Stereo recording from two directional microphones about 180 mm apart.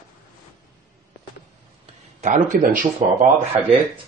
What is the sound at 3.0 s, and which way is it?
Speech, 30° right (ahead or behind).